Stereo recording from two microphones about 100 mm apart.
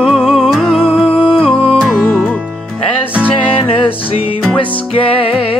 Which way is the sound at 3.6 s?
70° left (ahead or behind).